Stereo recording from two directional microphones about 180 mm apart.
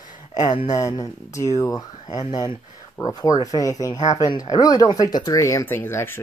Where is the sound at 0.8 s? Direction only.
20° left (ahead or behind).